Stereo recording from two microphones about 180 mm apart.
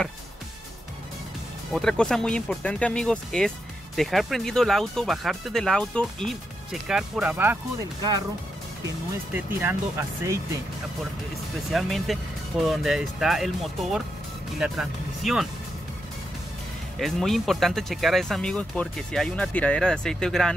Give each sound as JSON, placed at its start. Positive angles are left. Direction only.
{"t": 1.7, "sound": "speech", "side_deg": 5}
{"t": 9.3, "sound": "speech", "side_deg": -10}
{"t": 11.7, "sound": "speech", "side_deg": 0}
{"t": 17.0, "sound": "speech", "side_deg": 0}